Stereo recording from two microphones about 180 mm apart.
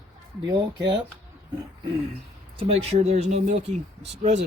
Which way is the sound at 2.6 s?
35° right (ahead or behind).